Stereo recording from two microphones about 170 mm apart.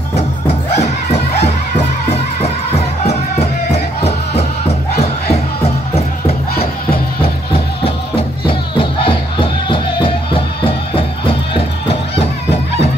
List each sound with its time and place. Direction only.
0.1 s music: 40° left (ahead or behind)